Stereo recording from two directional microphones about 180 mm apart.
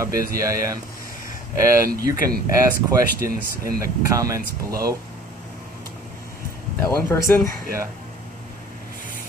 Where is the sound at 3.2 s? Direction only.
55° right (ahead or behind).